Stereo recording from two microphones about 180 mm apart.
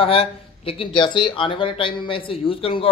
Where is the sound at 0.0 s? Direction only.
30° left (ahead or behind).